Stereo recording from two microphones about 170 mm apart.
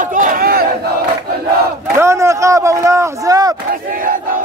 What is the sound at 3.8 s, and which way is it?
Battle cry, 55° right (ahead or behind).